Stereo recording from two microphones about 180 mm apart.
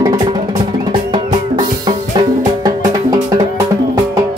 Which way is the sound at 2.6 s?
20° right (ahead or behind).